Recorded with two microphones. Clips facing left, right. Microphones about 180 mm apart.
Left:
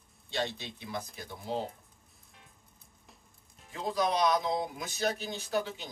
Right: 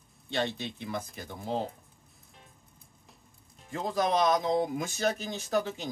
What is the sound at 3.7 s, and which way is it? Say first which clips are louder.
Speech: right 2 dB; 50° right (ahead or behind).